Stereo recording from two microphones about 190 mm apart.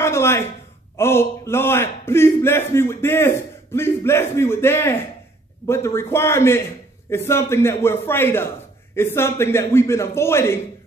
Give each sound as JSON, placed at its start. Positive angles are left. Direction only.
{"t": 0.0, "sound": "a man's voice", "side_deg": 15}